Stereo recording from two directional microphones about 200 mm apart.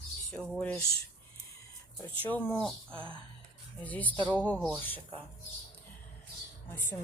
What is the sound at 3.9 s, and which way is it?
Speech, 10° left (ahead or behind).